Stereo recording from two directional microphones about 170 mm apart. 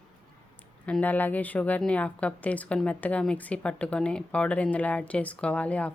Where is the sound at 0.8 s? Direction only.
10° left (ahead or behind).